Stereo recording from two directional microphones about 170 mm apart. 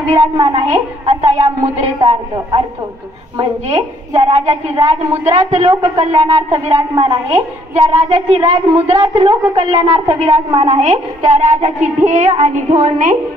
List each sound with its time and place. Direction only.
0.1 s a woman's voice: 30° right (ahead or behind)
5.4 s a woman's voice: 40° right (ahead or behind)